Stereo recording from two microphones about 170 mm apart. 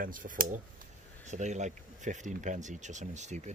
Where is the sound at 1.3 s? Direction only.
45° right (ahead or behind).